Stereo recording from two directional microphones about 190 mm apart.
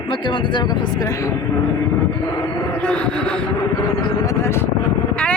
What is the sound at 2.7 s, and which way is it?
Speech, 5° left (ahead or behind).